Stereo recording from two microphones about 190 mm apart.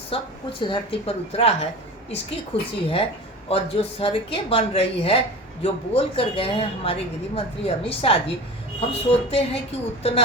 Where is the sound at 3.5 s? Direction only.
30° left (ahead or behind).